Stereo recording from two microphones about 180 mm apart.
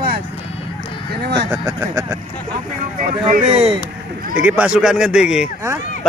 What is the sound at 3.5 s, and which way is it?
Speech, 30° right (ahead or behind).